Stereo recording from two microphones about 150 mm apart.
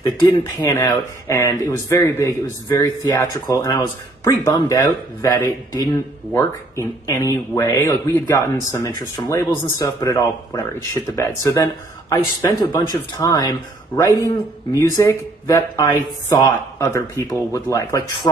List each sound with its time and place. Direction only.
0.7 s speech: 25° left (ahead or behind)